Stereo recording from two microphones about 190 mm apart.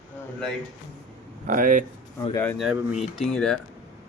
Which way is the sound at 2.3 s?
10° left (ahead or behind).